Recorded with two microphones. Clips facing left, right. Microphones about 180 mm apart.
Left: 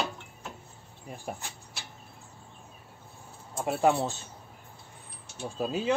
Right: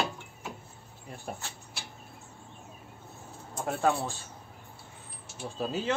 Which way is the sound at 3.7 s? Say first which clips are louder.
Left 3 dB; 15° left (ahead or behind).